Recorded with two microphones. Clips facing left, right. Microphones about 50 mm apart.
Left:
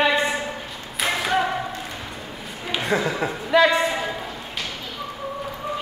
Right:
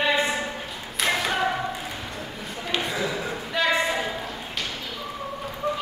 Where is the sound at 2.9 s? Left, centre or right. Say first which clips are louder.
Left 5 dB; left.